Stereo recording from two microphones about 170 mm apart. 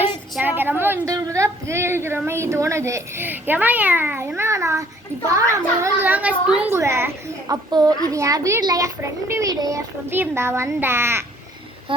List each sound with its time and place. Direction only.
0.3 s a woman's voice: 10° right (ahead or behind)
11.9 s speech: 30° right (ahead or behind)